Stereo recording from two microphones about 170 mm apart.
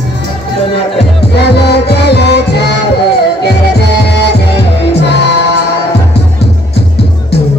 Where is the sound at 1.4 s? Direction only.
75° left (ahead or behind).